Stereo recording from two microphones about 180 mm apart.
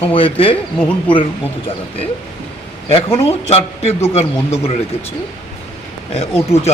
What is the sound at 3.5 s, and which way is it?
Speech, 35° left (ahead or behind).